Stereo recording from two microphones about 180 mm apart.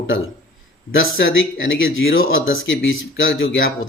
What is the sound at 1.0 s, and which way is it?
Speech, 90° left.